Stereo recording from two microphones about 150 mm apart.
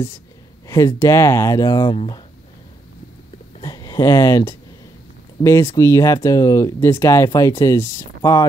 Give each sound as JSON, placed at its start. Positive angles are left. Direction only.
{"t": 0.7, "sound": "speech", "side_deg": 20}
{"t": 3.6, "sound": "speech", "side_deg": 25}